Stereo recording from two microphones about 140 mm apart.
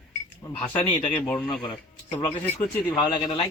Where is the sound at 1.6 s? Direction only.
35° left (ahead or behind).